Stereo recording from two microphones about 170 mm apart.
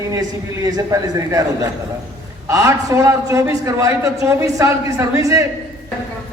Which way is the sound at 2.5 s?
20° right (ahead or behind).